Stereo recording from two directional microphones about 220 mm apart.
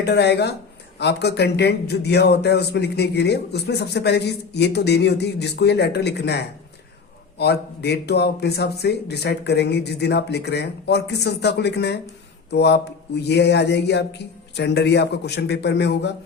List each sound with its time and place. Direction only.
0.0 s speech: 50° left (ahead or behind)